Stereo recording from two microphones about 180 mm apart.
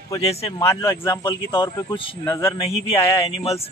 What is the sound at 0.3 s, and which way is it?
Speech, 35° left (ahead or behind).